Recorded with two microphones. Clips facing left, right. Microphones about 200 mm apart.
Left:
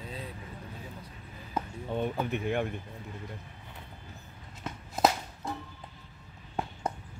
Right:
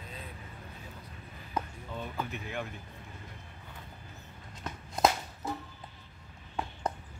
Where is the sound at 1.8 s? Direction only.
60° left (ahead or behind).